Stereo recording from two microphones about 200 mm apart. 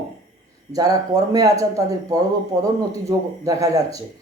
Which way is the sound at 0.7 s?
20° right (ahead or behind).